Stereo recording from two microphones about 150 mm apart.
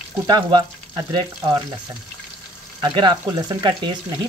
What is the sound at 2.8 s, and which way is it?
Stir, 30° right (ahead or behind).